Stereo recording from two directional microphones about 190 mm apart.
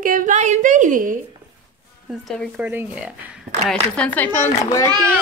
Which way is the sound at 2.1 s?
Centre (ahead or behind).